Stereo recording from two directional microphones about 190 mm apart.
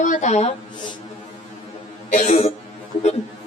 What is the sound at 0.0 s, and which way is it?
Speech, 40° left (ahead or behind).